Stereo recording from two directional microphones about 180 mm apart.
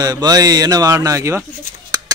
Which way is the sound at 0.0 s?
20° right (ahead or behind).